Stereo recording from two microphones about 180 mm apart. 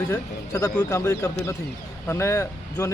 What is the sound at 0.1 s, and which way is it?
Speech, 20° left (ahead or behind).